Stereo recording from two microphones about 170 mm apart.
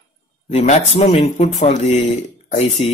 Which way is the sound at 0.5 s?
40° left (ahead or behind).